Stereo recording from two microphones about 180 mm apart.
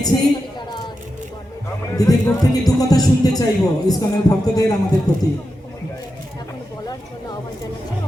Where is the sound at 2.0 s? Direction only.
20° left (ahead or behind).